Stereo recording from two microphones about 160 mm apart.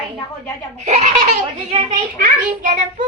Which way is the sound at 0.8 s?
45° right (ahead or behind).